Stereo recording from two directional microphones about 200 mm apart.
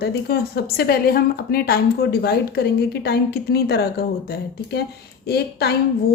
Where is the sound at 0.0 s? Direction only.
50° left (ahead or behind).